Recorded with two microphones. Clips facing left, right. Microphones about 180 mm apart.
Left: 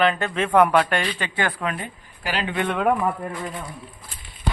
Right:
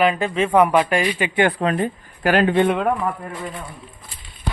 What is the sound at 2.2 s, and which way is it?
Speech, 55° right (ahead or behind).